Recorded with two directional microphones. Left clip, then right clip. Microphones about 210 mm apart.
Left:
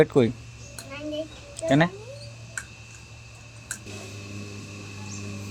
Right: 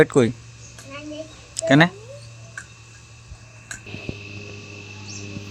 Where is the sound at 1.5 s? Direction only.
20° right (ahead or behind).